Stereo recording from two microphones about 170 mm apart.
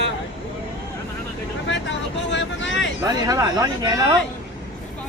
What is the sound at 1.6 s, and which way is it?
Vehicle, 90° left.